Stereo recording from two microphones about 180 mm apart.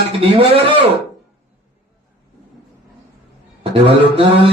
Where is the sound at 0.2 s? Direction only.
30° right (ahead or behind).